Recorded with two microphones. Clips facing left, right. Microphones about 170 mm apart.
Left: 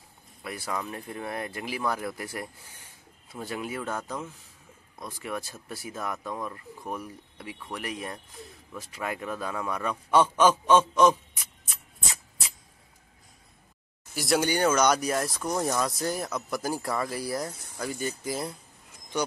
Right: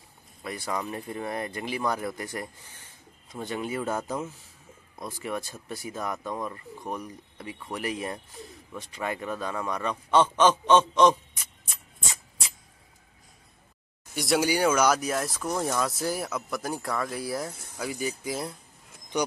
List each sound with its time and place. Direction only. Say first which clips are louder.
0.4 s speech: right 2 dB; 5° left (ahead or behind)
3.8 s a man's voice: right 3 dB; 10° right (ahead or behind)
14.1 s speech: right 1 dB; centre (ahead or behind)
19.1 s speech: right 2 dB; 15° right (ahead or behind)